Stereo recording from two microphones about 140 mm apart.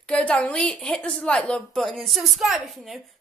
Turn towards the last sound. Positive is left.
turn(degrees=0)  # may be behind; listen again after turning